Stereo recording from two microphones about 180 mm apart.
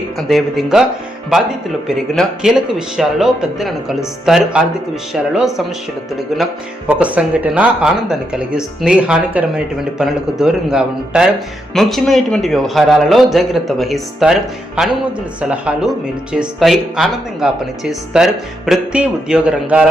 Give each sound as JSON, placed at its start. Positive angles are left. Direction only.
{"t": 0.3, "sound": "speech", "side_deg": 0}
{"t": 2.0, "sound": "speech", "side_deg": 0}
{"t": 15.4, "sound": "speech", "side_deg": -5}